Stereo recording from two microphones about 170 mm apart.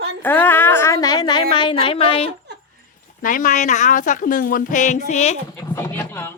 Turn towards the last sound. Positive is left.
turn(degrees=15)  # may be behind; listen again after turning